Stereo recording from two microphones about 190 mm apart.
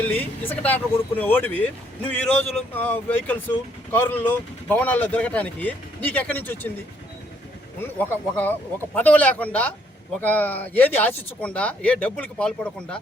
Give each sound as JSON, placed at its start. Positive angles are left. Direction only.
{"t": 0.0, "sound": "speech", "side_deg": 10}
{"t": 7.8, "sound": "speech", "side_deg": 10}